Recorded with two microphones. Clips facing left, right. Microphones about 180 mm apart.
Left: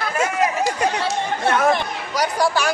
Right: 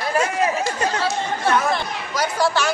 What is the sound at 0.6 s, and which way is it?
Chatter, 15° left (ahead or behind).